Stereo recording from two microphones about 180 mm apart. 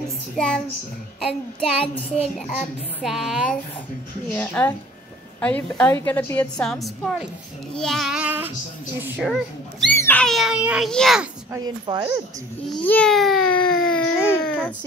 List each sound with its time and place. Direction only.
0.4 s speech: 5° left (ahead or behind)
2.5 s speech: centre (ahead or behind)
4.3 s a woman's voice: 10° left (ahead or behind)
9.9 s speech: 10° left (ahead or behind)
11.5 s speech: 25° right (ahead or behind)
12.6 s a child's voice: 5° left (ahead or behind)